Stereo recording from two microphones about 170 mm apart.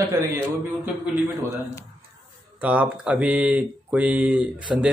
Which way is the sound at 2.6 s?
10° right (ahead or behind).